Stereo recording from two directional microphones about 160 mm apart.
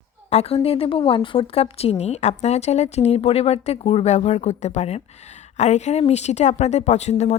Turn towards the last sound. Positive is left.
turn(degrees=45)  # may be behind; listen again after turning